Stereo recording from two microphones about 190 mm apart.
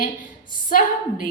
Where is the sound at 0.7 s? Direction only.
45° left (ahead or behind).